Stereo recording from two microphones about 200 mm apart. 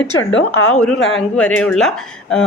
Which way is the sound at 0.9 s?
70° left (ahead or behind).